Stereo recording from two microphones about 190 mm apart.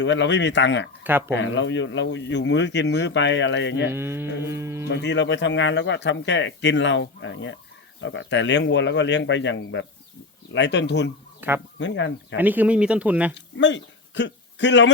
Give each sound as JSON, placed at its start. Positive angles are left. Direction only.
{"t": 0.0, "sound": "speech", "side_deg": 70}
{"t": 3.8, "sound": "speech", "side_deg": -10}
{"t": 4.9, "sound": "speech", "side_deg": 65}
{"t": 11.3, "sound": "speech", "side_deg": -10}
{"t": 11.8, "sound": "speech", "side_deg": 70}
{"t": 12.4, "sound": "speech", "side_deg": -10}
{"t": 13.3, "sound": "speech", "side_deg": 70}